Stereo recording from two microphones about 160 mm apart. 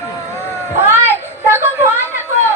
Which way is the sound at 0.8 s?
15° right (ahead or behind).